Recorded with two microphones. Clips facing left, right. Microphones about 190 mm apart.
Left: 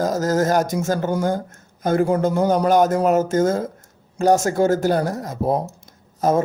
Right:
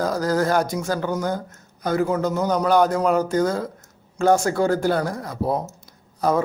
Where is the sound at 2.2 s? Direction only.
50° left (ahead or behind).